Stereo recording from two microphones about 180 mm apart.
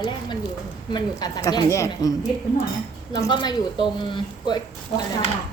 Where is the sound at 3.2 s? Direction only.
25° left (ahead or behind).